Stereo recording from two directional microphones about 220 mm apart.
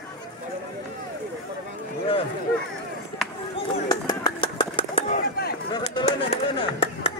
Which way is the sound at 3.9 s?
20° left (ahead or behind).